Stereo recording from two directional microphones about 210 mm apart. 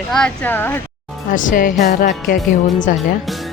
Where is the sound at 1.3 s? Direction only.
40° left (ahead or behind).